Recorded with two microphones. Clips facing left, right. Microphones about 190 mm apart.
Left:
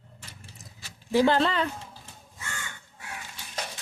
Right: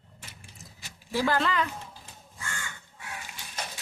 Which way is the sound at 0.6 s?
15° left (ahead or behind).